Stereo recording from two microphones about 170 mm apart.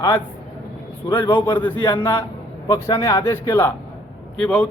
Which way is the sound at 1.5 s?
25° left (ahead or behind).